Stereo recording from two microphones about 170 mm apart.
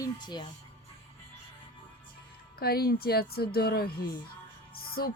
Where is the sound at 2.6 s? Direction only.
65° left (ahead or behind).